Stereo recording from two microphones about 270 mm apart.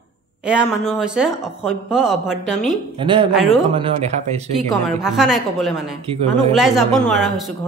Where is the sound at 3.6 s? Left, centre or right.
Centre.